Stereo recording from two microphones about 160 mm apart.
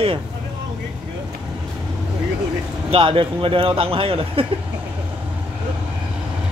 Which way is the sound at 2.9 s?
35° right (ahead or behind).